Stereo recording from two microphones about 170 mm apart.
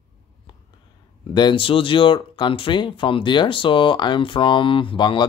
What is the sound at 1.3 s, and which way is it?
Speech, 30° left (ahead or behind).